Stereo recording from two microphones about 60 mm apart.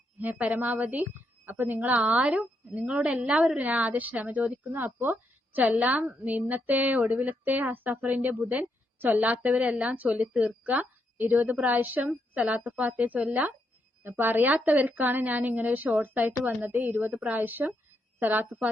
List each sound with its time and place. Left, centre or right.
0.2 s a woman's voice: right
2.0 s a woman's voice: centre
4.7 s a woman's voice: right
5.5 s a woman's voice: right
14.0 s a woman's voice: right